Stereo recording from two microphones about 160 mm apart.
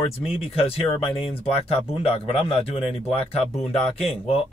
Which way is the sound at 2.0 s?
35° left (ahead or behind).